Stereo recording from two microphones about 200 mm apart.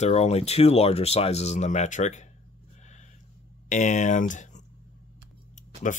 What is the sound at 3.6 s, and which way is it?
Speech, 35° left (ahead or behind).